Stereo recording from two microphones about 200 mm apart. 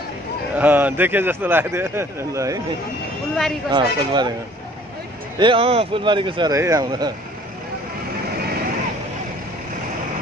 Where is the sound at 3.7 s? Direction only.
20° right (ahead or behind).